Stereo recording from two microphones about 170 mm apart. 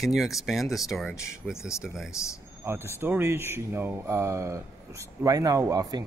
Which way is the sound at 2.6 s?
15° right (ahead or behind).